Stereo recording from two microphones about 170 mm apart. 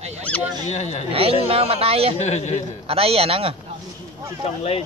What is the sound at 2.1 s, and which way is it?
Speech, 40° left (ahead or behind).